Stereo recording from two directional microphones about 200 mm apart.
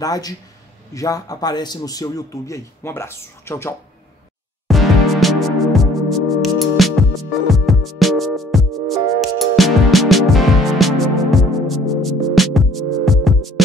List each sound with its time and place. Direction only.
0.0 s a man's voice: 20° left (ahead or behind)
4.6 s music: centre (ahead or behind)